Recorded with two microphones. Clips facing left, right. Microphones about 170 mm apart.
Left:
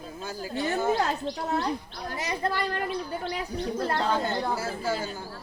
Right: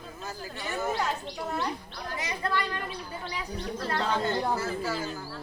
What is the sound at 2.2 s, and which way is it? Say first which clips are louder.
A woman's voice: left 2 dB; 40° left (ahead or behind).